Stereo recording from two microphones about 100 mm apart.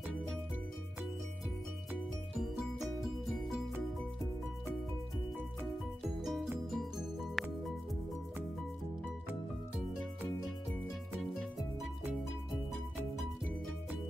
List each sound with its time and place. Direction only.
2.3 s music: 5° right (ahead or behind)
6.2 s music: centre (ahead or behind)